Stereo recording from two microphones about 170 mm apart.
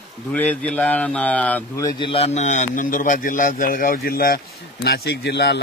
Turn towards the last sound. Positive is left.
turn(degrees=80)